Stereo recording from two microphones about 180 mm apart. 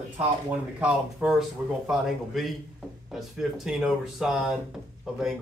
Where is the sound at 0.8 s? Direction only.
5° right (ahead or behind).